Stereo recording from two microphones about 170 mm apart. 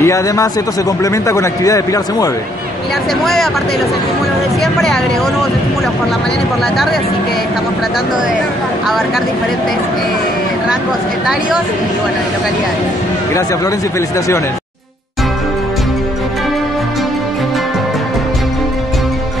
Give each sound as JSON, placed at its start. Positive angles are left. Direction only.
{"t": 0.0, "sound": "a man's voice", "side_deg": 20}